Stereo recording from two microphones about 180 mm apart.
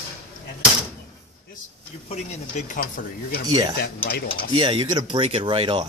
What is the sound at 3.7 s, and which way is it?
Speech, 60° left (ahead or behind).